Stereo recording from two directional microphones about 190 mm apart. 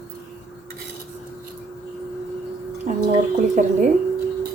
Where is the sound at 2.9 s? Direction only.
40° right (ahead or behind).